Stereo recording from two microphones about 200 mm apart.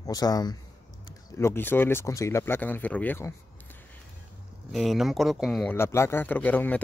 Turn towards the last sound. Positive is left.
turn(degrees=10)  # may be behind; listen again after turning